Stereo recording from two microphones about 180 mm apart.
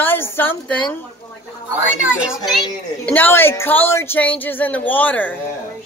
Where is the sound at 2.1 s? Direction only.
Centre (ahead or behind).